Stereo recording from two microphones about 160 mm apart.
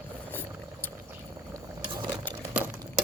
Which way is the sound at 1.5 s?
25° right (ahead or behind).